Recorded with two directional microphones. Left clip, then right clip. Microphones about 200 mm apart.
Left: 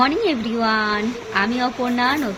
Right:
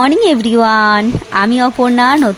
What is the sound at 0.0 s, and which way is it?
Speech, 50° right (ahead or behind).